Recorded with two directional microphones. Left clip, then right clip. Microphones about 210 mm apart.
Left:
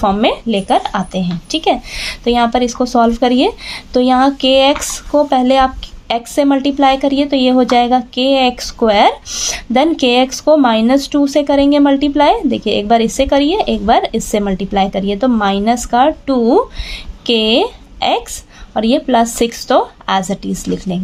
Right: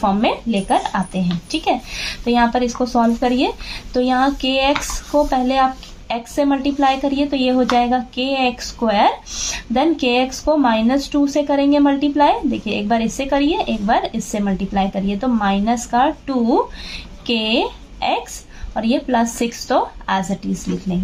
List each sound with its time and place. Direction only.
0.0 s a woman's voice: 45° left (ahead or behind)